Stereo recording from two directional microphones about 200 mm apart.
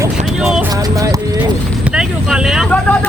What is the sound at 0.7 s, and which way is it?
Clip-clop, 20° right (ahead or behind).